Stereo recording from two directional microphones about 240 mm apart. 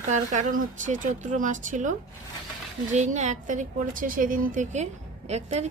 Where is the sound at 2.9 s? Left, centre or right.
Right.